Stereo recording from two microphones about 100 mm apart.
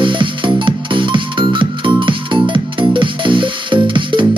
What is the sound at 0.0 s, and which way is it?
Music, 55° right (ahead or behind).